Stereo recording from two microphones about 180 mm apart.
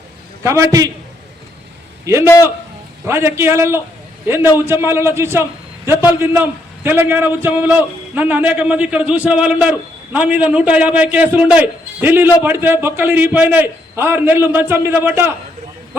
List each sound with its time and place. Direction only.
0.4 s a man's voice: 15° right (ahead or behind)
2.2 s a man's voice: 15° left (ahead or behind)
3.1 s a man's voice: 15° right (ahead or behind)